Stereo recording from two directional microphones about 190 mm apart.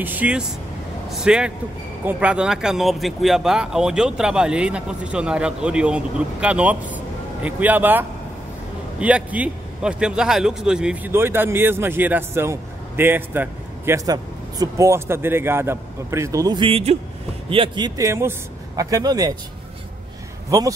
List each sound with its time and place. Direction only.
0.0 s a man's voice: 10° right (ahead or behind)
9.0 s a man's voice: 5° right (ahead or behind)
20.4 s speech: 20° right (ahead or behind)